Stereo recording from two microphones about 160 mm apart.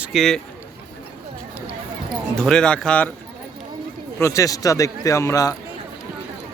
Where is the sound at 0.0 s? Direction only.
Centre (ahead or behind).